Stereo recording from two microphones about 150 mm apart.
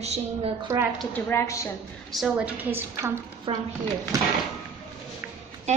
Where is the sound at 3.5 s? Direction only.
35° right (ahead or behind).